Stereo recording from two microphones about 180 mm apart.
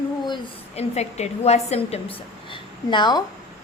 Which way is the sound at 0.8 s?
35° left (ahead or behind).